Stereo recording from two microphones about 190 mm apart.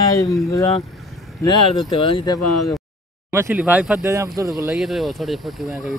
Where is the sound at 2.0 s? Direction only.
25° left (ahead or behind).